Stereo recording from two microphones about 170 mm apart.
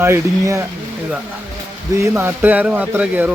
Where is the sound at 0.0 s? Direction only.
15° right (ahead or behind).